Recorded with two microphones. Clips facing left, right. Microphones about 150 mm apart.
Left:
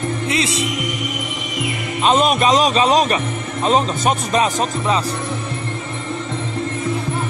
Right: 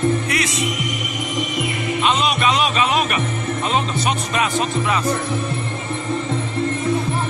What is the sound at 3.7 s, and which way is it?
Speech, 40° left (ahead or behind).